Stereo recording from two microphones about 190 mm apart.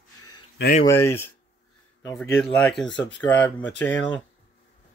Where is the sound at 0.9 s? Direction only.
15° left (ahead or behind).